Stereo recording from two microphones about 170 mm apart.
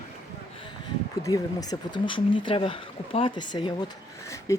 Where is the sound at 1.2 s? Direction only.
20° left (ahead or behind).